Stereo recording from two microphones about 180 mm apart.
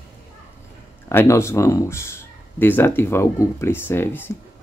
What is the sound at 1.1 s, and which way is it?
Speech, 15° left (ahead or behind).